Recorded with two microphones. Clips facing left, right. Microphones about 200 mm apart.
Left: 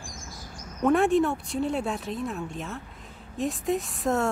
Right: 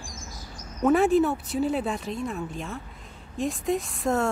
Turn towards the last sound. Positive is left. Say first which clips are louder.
# right 1 dB
turn(degrees=0)  # may be behind; listen again after turning